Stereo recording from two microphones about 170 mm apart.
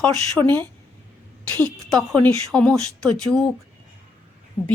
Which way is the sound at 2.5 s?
5° left (ahead or behind).